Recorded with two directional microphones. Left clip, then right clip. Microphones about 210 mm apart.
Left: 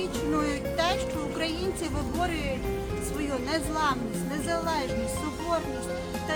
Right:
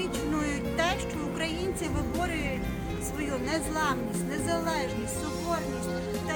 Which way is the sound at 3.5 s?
20° right (ahead or behind).